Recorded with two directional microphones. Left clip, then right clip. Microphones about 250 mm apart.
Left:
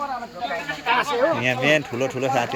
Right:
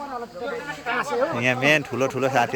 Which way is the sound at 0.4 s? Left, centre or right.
Centre.